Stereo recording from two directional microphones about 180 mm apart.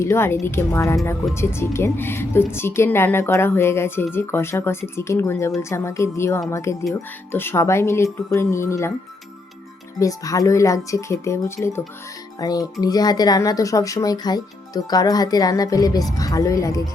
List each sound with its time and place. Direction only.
0.0 s a woman's voice: 15° left (ahead or behind)
10.0 s a woman's voice: 20° left (ahead or behind)